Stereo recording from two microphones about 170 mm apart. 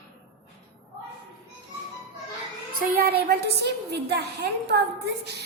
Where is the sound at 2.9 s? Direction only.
70° right (ahead or behind).